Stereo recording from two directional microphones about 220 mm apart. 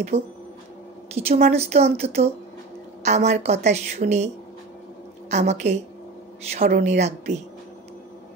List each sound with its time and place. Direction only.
0.1 s a woman's voice: 30° right (ahead or behind)
5.3 s a woman's voice: 30° right (ahead or behind)